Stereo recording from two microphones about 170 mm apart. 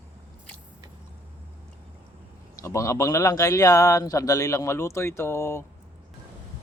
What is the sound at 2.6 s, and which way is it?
Speech, 20° left (ahead or behind).